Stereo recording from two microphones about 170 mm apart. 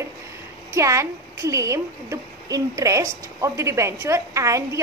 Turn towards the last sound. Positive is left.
turn(degrees=-20)  # may be behind; listen again after turning